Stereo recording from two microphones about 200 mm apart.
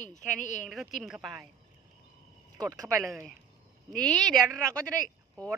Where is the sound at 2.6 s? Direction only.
15° right (ahead or behind).